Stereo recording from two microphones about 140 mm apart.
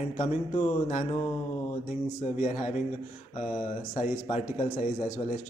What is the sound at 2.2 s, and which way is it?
A man's voice, 55° left (ahead or behind).